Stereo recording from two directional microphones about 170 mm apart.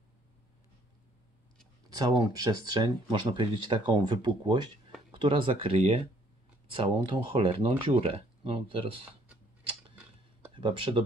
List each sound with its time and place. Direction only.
1.9 s speech: 20° right (ahead or behind)
10.5 s speech: 30° right (ahead or behind)